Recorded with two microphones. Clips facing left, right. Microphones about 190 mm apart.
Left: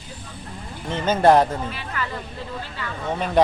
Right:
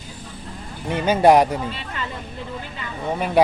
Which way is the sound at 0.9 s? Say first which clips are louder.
Right 2 dB; 15° right (ahead or behind).